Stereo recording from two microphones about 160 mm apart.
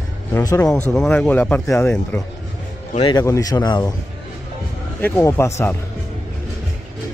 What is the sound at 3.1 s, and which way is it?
Speech, 20° left (ahead or behind).